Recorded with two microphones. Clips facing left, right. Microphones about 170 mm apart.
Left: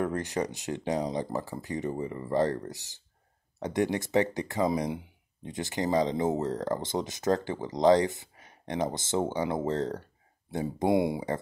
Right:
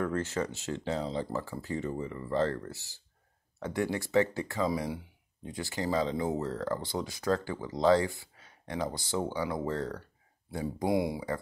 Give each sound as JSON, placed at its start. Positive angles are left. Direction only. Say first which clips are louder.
{"t": 0.0, "sound": "speech", "louder": "left 2 dB", "side_deg": 15}